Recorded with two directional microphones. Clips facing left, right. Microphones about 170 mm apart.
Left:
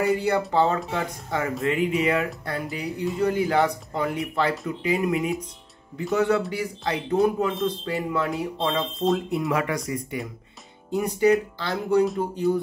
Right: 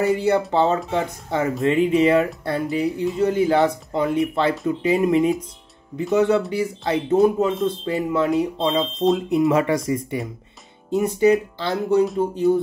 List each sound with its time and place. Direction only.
0.0 s speech: 20° right (ahead or behind)